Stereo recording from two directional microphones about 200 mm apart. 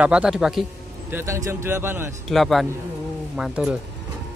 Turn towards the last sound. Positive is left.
turn(degrees=-5)  # may be behind; listen again after turning